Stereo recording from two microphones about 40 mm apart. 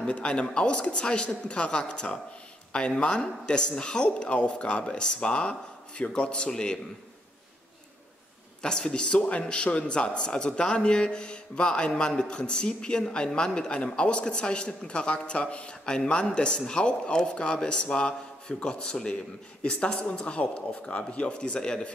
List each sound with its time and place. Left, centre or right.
0.2 s a man's voice: left
8.6 s a man's voice: centre